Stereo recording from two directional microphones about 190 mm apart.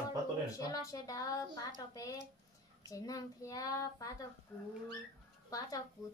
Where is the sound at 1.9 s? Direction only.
20° left (ahead or behind).